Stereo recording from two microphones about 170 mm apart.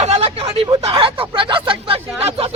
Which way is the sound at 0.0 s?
35° right (ahead or behind).